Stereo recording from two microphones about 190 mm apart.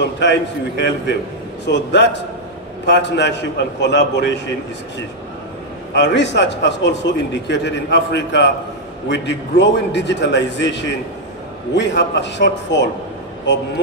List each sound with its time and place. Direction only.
0.2 s a man's voice: 65° left (ahead or behind)
5.9 s a man's voice: 65° left (ahead or behind)